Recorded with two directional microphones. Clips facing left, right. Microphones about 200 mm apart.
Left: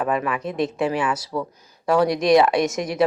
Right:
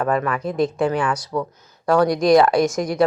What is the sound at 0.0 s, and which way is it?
A woman's voice, 5° left (ahead or behind).